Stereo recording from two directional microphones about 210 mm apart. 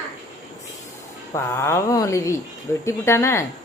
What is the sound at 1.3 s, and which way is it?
Speech, 15° left (ahead or behind).